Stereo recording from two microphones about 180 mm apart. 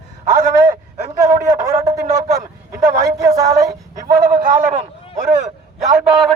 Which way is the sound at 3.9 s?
45° right (ahead or behind).